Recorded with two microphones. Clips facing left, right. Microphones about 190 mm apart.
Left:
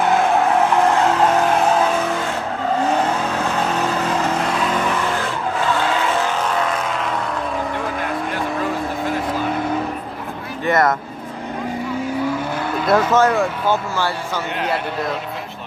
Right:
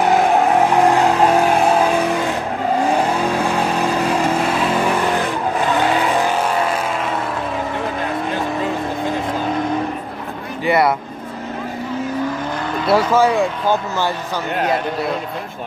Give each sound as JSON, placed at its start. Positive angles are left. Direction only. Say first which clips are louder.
{"t": 0.0, "sound": "vehicle", "louder": "right 2 dB", "side_deg": -15}
{"t": 10.6, "sound": "vehicle", "louder": "right 1 dB", "side_deg": -10}
{"t": 13.1, "sound": "a man's voice", "louder": "right 1 dB", "side_deg": -10}